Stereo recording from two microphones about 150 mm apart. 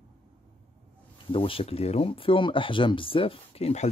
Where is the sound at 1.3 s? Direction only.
35° left (ahead or behind).